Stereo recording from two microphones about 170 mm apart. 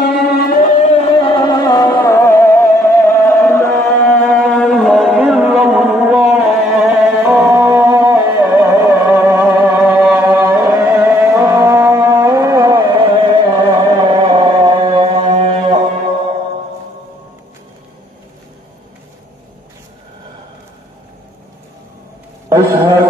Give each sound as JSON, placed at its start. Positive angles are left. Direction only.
{"t": 0.0, "sound": "music", "side_deg": 70}
{"t": 1.2, "sound": "music", "side_deg": 25}
{"t": 9.0, "sound": "music", "side_deg": -5}
{"t": 12.9, "sound": "music", "side_deg": -30}